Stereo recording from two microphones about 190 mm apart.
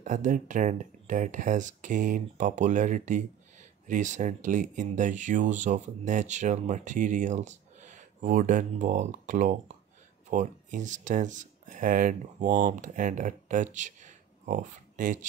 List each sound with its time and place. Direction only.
0.0 s speech: 40° right (ahead or behind)